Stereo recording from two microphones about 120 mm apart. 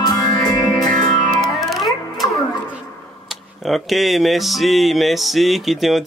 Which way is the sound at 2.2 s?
30° left (ahead or behind).